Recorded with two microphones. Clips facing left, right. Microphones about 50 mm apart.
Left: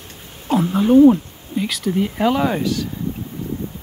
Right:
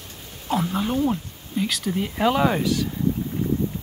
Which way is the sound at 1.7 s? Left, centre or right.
Centre.